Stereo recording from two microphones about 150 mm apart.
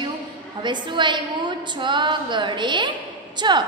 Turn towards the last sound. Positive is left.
turn(degrees=-30)  # may be behind; listen again after turning